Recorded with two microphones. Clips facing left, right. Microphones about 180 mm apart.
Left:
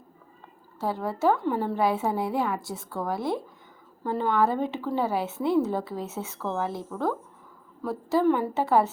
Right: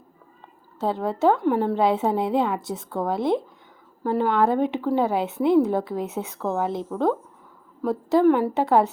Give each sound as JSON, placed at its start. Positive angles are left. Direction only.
{"t": 0.8, "sound": "a woman's voice", "side_deg": -20}